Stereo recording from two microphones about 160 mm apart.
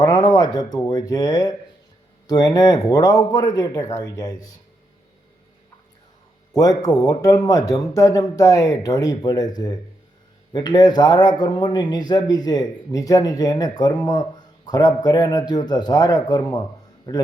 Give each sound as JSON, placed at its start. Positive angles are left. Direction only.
{"t": 0.0, "sound": "speech", "side_deg": 25}
{"t": 6.6, "sound": "speech", "side_deg": 20}